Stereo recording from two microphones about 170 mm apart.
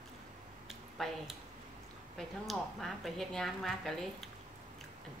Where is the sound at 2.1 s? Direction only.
Centre (ahead or behind).